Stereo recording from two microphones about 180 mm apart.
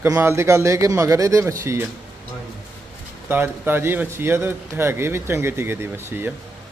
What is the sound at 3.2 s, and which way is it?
Speech, 10° right (ahead or behind).